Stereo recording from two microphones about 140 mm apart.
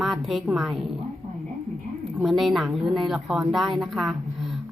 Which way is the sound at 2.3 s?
Centre (ahead or behind).